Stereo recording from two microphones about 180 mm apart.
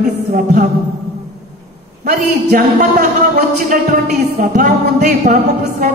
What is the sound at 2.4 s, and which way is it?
Music, 65° right (ahead or behind).